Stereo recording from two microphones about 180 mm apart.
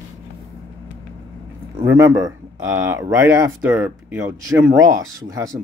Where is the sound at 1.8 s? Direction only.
15° right (ahead or behind).